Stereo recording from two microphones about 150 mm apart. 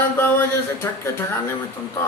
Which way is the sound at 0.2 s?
15° left (ahead or behind).